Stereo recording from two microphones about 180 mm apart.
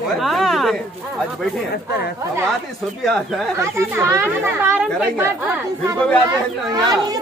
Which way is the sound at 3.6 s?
15° right (ahead or behind).